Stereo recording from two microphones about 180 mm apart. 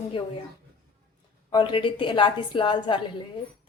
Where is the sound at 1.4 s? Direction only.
25° left (ahead or behind).